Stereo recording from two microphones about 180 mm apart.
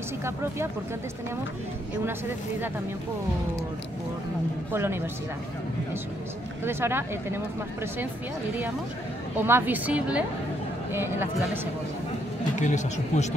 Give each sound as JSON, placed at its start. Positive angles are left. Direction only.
{"t": 0.2, "sound": "speech", "side_deg": -15}
{"t": 4.7, "sound": "speech", "side_deg": -15}
{"t": 6.6, "sound": "speech", "side_deg": -15}
{"t": 9.4, "sound": "speech", "side_deg": -10}
{"t": 12.5, "sound": "speech", "side_deg": 40}